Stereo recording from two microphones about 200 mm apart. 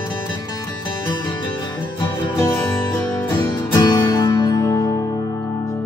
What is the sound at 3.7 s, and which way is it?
Music, 20° left (ahead or behind).